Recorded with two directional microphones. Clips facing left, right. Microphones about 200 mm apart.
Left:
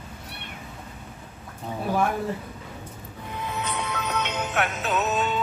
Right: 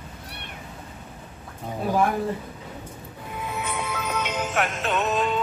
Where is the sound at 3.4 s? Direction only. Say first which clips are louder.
Even; 10° right (ahead or behind).